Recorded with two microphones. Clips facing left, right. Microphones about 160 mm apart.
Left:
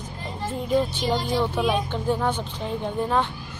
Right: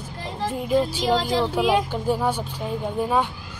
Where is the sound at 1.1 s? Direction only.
90° right.